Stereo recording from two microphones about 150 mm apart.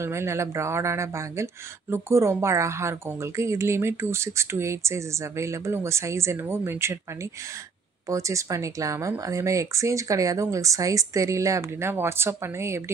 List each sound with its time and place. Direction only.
0.0 s speech: 20° right (ahead or behind)
8.1 s speech: 20° right (ahead or behind)